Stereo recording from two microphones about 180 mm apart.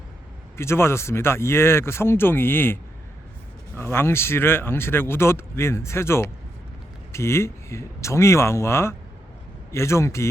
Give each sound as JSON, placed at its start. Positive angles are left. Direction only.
{"t": 0.5, "sound": "speech", "side_deg": 15}
{"t": 3.8, "sound": "speech", "side_deg": 10}